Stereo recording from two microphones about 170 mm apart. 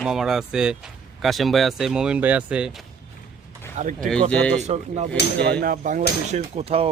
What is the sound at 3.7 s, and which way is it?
Speech, 50° right (ahead or behind).